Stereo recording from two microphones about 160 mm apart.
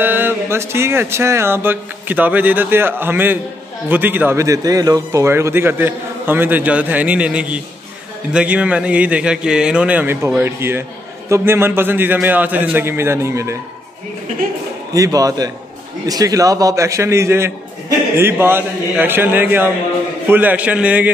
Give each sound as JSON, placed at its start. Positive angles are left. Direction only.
{"t": 0.0, "sound": "a man's voice", "side_deg": -10}
{"t": 15.0, "sound": "a man's voice", "side_deg": -20}